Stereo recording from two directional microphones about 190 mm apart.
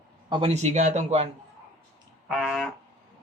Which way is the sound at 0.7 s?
40° right (ahead or behind).